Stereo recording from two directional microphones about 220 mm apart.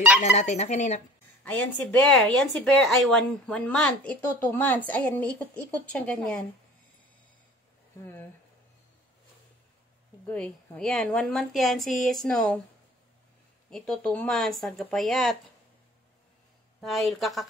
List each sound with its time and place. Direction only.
0.2 s speech: 30° left (ahead or behind)
1.4 s speech: 5° left (ahead or behind)
10.2 s speech: 5° left (ahead or behind)
13.7 s speech: centre (ahead or behind)
16.8 s speech: centre (ahead or behind)